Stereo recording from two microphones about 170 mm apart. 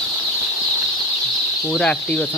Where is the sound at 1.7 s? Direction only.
5° left (ahead or behind).